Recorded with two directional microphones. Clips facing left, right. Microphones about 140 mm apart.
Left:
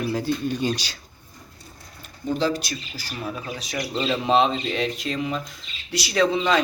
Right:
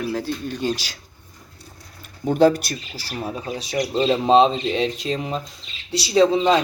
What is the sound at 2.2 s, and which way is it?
Speech, 60° right (ahead or behind).